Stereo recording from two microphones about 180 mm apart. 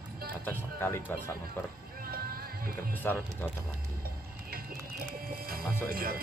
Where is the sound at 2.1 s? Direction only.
55° right (ahead or behind).